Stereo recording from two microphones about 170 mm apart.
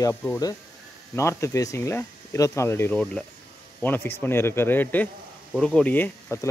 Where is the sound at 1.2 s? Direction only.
15° left (ahead or behind).